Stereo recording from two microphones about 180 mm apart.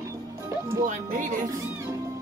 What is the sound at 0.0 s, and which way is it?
Music, 15° right (ahead or behind).